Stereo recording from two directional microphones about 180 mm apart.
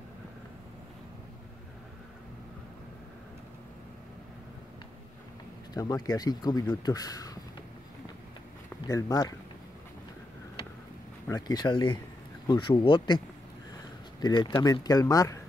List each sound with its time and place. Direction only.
5.8 s speech: 20° left (ahead or behind)
8.8 s speech: 20° left (ahead or behind)
11.2 s speech: 20° left (ahead or behind)
14.2 s speech: 25° left (ahead or behind)